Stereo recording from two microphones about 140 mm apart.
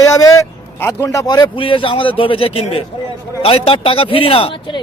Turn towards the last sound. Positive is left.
turn(degrees=40)  # may be behind; listen again after turning